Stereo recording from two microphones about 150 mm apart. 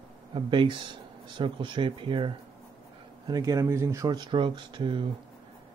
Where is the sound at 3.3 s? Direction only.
25° right (ahead or behind).